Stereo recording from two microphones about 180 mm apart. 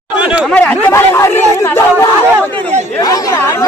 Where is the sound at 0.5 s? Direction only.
10° left (ahead or behind).